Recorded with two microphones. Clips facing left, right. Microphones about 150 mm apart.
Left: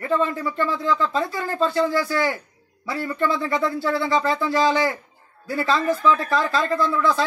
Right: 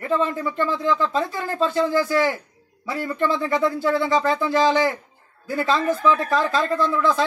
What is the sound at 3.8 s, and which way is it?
Speech, centre (ahead or behind).